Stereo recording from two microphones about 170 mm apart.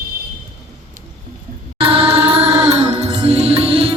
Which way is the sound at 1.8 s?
35° right (ahead or behind).